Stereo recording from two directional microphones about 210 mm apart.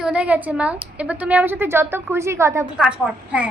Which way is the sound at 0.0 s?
5° right (ahead or behind).